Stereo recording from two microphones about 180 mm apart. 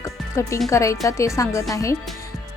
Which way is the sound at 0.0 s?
15° left (ahead or behind).